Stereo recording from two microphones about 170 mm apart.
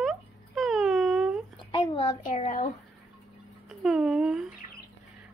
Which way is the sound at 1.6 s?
30° left (ahead or behind).